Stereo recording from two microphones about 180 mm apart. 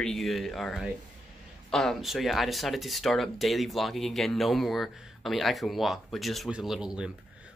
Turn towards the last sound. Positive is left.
turn(degrees=-5)  # may be behind; listen again after turning